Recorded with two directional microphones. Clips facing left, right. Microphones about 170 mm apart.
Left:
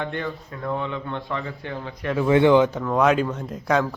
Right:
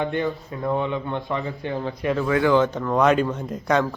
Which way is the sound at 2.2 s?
25° left (ahead or behind).